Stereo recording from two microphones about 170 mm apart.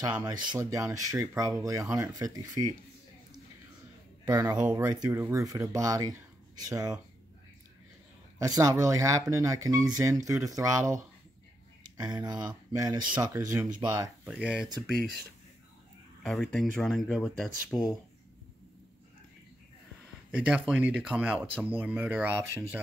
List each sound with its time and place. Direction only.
0.0 s speech: 25° right (ahead or behind)
4.3 s speech: 20° right (ahead or behind)
8.5 s speech: 20° right (ahead or behind)
12.0 s speech: 25° right (ahead or behind)
14.2 s speech: 5° right (ahead or behind)
16.2 s speech: 5° left (ahead or behind)
20.2 s speech: 5° right (ahead or behind)